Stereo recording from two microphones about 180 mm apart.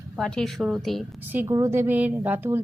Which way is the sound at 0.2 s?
Centre (ahead or behind).